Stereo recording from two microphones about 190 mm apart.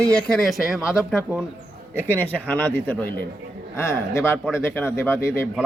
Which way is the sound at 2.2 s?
10° left (ahead or behind).